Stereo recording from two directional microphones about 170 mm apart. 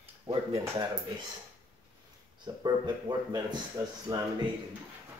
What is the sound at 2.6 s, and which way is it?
Speech, 25° right (ahead or behind).